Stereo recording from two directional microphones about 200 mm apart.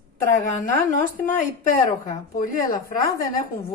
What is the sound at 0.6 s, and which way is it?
Speech, 40° left (ahead or behind).